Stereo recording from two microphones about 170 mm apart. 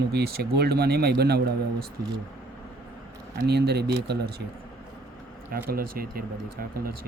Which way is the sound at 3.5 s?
70° right (ahead or behind).